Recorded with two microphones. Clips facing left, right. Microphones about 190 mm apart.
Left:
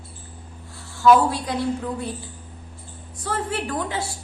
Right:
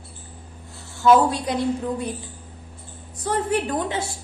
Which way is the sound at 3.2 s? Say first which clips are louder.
Right 4 dB; 20° right (ahead or behind).